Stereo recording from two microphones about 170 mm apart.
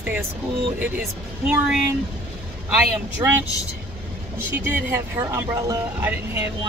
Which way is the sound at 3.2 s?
15° right (ahead or behind).